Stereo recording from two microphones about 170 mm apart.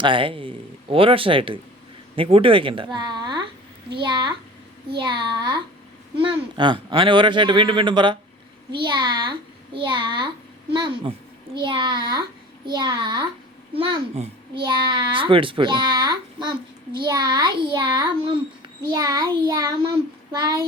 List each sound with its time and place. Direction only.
0.0 s a child's voice: 30° right (ahead or behind)